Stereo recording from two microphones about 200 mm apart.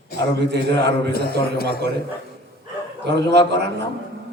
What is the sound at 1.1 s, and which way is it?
Speech, 50° left (ahead or behind).